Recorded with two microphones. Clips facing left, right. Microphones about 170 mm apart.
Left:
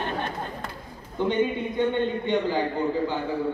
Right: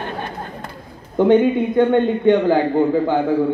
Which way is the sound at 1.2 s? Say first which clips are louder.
Right 11 dB; 55° right (ahead or behind).